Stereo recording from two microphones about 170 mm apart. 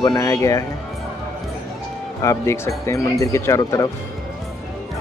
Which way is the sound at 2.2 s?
15° left (ahead or behind).